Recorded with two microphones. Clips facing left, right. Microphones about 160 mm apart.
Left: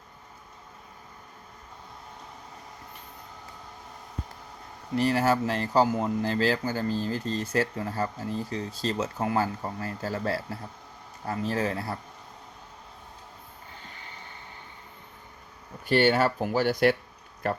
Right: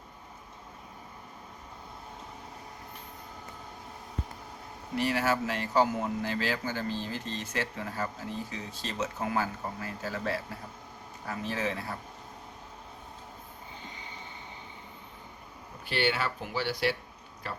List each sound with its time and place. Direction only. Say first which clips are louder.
4.9 s speech: left 5 dB; 40° left (ahead or behind)
13.8 s vehicle: right 1 dB; 15° right (ahead or behind)
15.9 s speech: left 8 dB; 45° left (ahead or behind)